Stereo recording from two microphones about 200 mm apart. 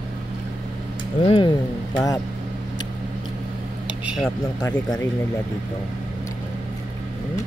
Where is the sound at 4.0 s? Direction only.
5° right (ahead or behind).